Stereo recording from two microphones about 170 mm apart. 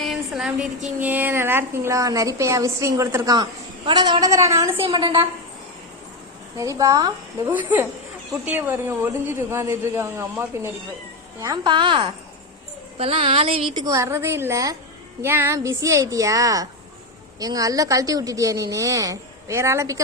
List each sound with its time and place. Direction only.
0.0 s a woman's voice: centre (ahead or behind); by 5.3 s 30° right (ahead or behind)
6.6 s a woman's voice: 20° right (ahead or behind)
7.4 s a woman's voice: 10° right (ahead or behind)